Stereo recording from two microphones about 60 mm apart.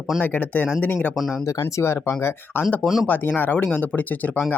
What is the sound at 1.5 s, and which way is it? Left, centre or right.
Speech, left.